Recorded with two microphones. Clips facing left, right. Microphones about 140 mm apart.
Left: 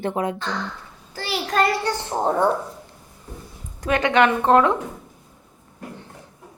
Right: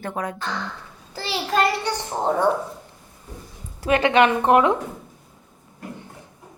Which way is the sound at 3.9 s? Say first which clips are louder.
Right 1 dB; 20° right (ahead or behind).